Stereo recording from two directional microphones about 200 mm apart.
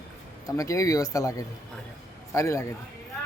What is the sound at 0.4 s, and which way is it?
A man's voice, 15° left (ahead or behind).